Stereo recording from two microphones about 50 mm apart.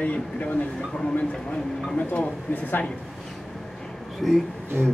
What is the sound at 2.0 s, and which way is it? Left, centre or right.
Speech, left.